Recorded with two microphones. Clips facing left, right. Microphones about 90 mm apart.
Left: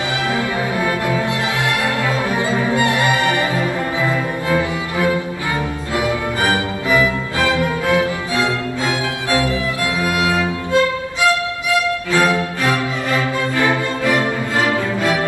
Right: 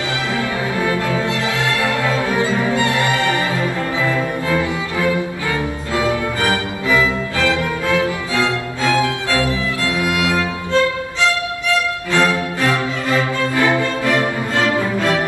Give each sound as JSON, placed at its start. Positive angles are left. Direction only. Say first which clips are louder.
{"t": 2.0, "sound": "music", "louder": "right 1 dB", "side_deg": 20}
{"t": 12.2, "sound": "music", "louder": "right 1 dB", "side_deg": 15}